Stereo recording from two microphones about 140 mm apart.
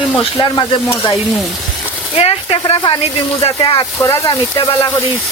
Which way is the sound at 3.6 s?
25° left (ahead or behind).